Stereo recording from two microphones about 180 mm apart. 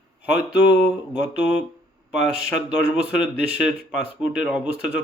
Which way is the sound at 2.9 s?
5° right (ahead or behind).